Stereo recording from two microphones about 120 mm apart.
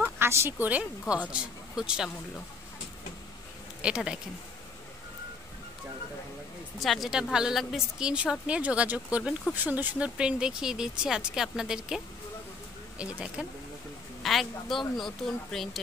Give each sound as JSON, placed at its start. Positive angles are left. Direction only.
{"t": 0.0, "sound": "speech", "side_deg": -20}
{"t": 3.8, "sound": "speech", "side_deg": -5}
{"t": 6.8, "sound": "a woman's voice", "side_deg": 0}
{"t": 13.0, "sound": "a woman's voice", "side_deg": -10}